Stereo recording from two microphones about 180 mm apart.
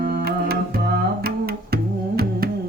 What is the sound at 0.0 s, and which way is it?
Music, 55° right (ahead or behind).